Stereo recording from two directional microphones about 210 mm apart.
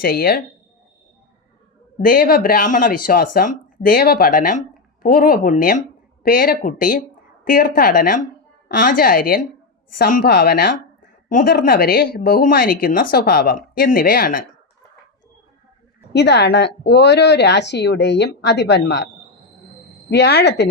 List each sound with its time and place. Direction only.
0.0 s a woman's voice: 45° left (ahead or behind)
2.0 s a woman's voice: 40° left (ahead or behind)
16.1 s speech: 55° left (ahead or behind)
20.1 s a woman's voice: 50° left (ahead or behind)